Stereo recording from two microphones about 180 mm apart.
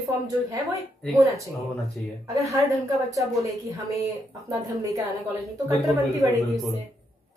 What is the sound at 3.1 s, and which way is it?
Speech, 20° right (ahead or behind).